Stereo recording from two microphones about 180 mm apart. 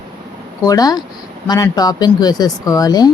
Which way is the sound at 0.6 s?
20° left (ahead or behind).